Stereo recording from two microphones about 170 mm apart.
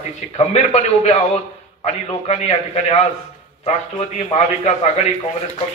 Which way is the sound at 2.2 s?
40° left (ahead or behind).